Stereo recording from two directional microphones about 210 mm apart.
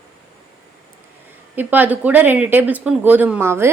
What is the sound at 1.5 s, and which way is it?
Speech, 10° right (ahead or behind).